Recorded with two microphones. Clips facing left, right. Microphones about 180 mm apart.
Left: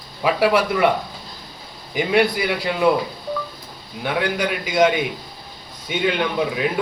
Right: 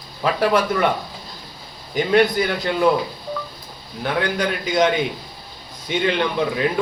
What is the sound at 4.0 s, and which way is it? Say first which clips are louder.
A man's voice: even; 5° left (ahead or behind).